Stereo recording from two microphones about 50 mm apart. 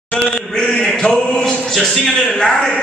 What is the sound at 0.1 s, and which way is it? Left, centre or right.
Chant, centre.